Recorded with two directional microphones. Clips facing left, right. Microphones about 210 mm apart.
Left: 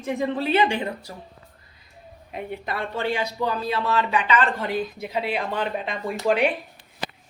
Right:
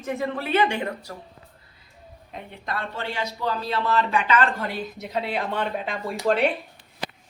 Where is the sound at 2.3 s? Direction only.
10° left (ahead or behind).